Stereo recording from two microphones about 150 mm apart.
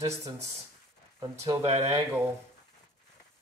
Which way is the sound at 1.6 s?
40° right (ahead or behind).